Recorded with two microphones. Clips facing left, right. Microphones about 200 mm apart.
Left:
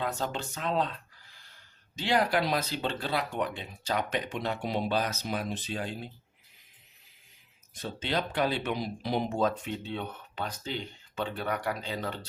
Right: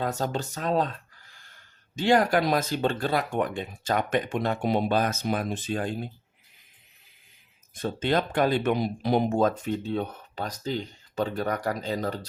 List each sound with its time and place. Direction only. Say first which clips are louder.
0.0 s speech: right 4 dB; 40° right (ahead or behind)
7.8 s speech: right 6 dB; 50° right (ahead or behind)